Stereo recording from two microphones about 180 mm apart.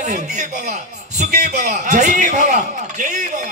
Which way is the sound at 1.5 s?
45° right (ahead or behind).